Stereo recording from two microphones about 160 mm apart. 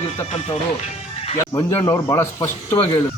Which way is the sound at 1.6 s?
20° left (ahead or behind).